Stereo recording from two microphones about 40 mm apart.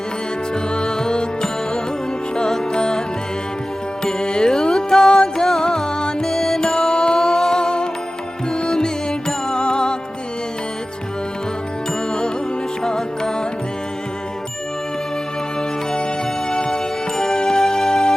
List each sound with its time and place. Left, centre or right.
0.5 s music: left
4.0 s music: centre
12.8 s music: centre
16.5 s music: centre